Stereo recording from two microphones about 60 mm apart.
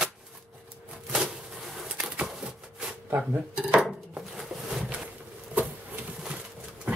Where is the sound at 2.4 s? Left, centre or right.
Centre.